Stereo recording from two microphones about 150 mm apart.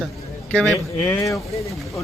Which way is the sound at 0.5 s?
5° left (ahead or behind).